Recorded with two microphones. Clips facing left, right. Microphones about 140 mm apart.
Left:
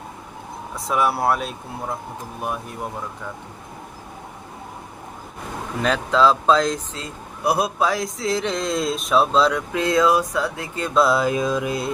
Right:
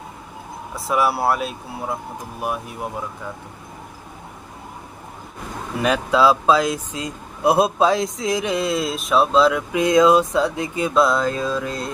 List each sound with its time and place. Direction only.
0.9 s speech: 5° right (ahead or behind)
5.8 s speech: 10° right (ahead or behind)
9.8 s a sound: 15° right (ahead or behind)
10.9 s mantra: 5° left (ahead or behind)